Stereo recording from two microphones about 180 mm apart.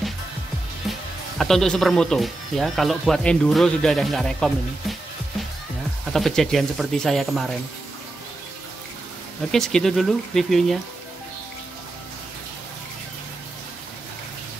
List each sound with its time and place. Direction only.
0.8 s music: centre (ahead or behind)
1.4 s speech: centre (ahead or behind)
6.1 s speech: centre (ahead or behind)
9.5 s speech: 5° left (ahead or behind)